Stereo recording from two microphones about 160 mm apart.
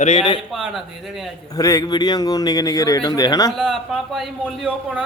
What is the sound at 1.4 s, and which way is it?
Speech, 20° left (ahead or behind).